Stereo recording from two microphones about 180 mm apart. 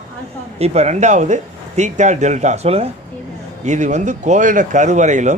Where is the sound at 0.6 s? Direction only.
40° right (ahead or behind).